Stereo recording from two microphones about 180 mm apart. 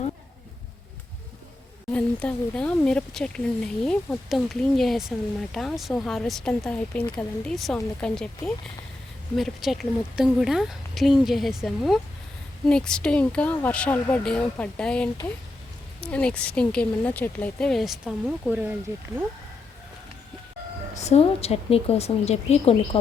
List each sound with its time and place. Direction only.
1.9 s speech: 5° left (ahead or behind)
9.3 s speech: centre (ahead or behind)
20.9 s a woman's voice: 35° left (ahead or behind)